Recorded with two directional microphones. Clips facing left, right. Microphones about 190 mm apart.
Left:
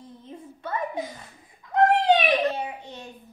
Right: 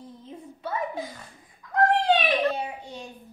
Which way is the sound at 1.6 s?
20° left (ahead or behind).